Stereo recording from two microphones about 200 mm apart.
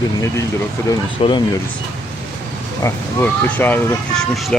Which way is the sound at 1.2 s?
30° left (ahead or behind).